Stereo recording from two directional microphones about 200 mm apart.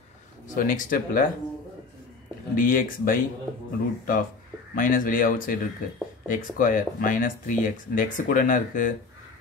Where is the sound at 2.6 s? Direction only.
45° left (ahead or behind).